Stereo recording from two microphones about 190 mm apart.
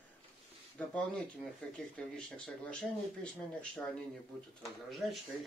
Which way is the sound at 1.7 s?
5° left (ahead or behind).